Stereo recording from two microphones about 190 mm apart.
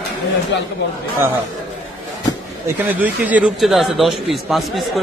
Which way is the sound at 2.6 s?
10° right (ahead or behind).